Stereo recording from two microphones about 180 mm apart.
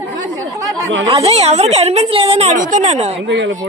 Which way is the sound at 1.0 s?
35° right (ahead or behind).